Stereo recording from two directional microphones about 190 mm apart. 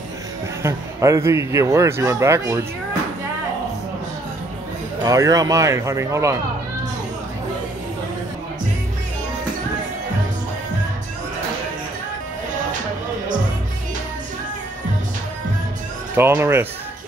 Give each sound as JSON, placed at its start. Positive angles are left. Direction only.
{"t": 0.6, "sound": "speech", "side_deg": -15}
{"t": 5.0, "sound": "speech", "side_deg": -20}
{"t": 16.2, "sound": "speech", "side_deg": -10}